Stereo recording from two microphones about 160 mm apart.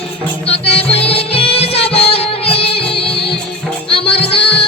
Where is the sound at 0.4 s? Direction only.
40° left (ahead or behind).